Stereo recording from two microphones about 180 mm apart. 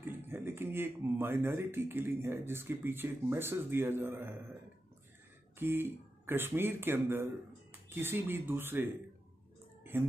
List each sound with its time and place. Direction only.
0.1 s speech: 10° right (ahead or behind)
5.6 s speech: 10° right (ahead or behind)
9.9 s speech: 10° right (ahead or behind)